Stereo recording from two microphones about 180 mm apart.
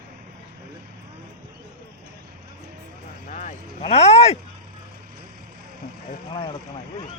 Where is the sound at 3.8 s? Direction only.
35° left (ahead or behind).